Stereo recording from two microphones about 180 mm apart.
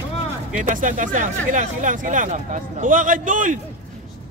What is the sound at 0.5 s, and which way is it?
Speech, 45° right (ahead or behind).